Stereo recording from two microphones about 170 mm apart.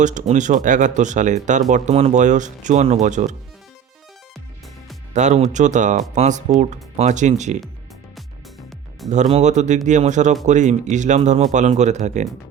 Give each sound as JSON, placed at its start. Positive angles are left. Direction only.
{"t": 0.0, "sound": "speech", "side_deg": -45}
{"t": 5.1, "sound": "speech", "side_deg": -45}
{"t": 9.0, "sound": "speech", "side_deg": -45}